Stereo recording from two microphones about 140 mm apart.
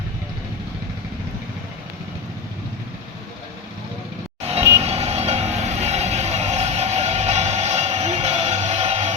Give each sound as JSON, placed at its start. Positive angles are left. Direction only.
{"t": 4.8, "sound": "vehicle", "side_deg": -50}